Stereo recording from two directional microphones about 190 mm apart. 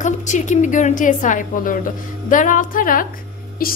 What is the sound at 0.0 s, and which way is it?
A woman's voice, 40° left (ahead or behind).